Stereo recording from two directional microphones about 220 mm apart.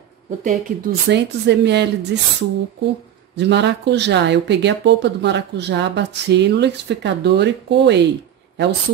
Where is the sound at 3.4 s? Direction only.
50° right (ahead or behind).